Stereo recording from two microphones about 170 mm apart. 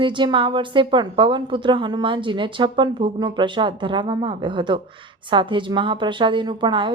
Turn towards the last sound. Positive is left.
turn(degrees=-30)  # may be behind; listen again after turning